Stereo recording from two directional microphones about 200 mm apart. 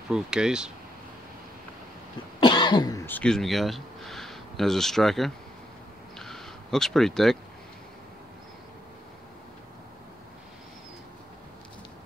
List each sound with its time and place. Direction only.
0.1 s speech: 5° right (ahead or behind)
2.4 s cough: 20° left (ahead or behind)
3.1 s speech: 5° left (ahead or behind)
6.1 s a sound: centre (ahead or behind)